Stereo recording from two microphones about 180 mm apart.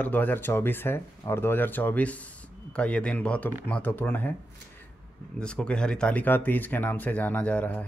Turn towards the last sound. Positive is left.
turn(degrees=10)  # may be behind; listen again after turning